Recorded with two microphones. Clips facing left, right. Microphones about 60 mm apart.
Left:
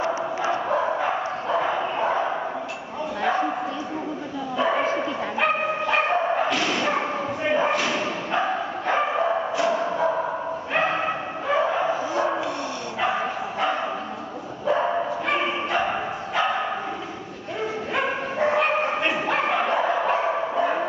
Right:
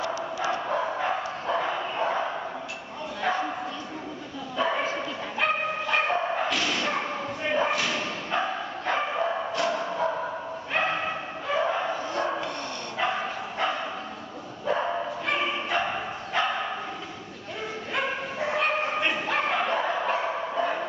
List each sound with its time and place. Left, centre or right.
0.4 s dog: centre
3.2 s bow-wow: centre
4.6 s bow-wow: centre
9.6 s music: centre
10.7 s bow-wow: centre
14.7 s dog: centre
15.2 s bow-wow: centre
17.9 s bow-wow: centre